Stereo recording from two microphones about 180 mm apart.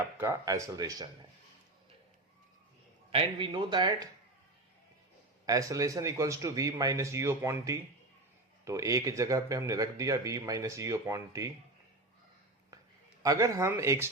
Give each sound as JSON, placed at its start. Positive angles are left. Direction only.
{"t": 0.2, "sound": "speech", "side_deg": -15}
{"t": 3.1, "sound": "speech", "side_deg": -30}
{"t": 5.5, "sound": "speech", "side_deg": -20}
{"t": 13.2, "sound": "speech", "side_deg": -20}